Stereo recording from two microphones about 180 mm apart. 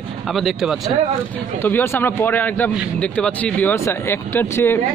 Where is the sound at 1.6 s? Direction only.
10° left (ahead or behind).